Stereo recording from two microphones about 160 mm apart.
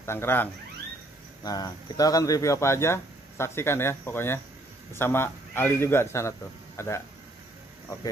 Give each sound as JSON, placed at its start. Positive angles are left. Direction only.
{"t": 0.0, "sound": "speech", "side_deg": 15}